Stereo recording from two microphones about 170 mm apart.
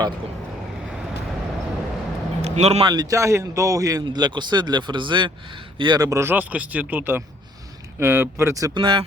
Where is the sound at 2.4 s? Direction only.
40° right (ahead or behind).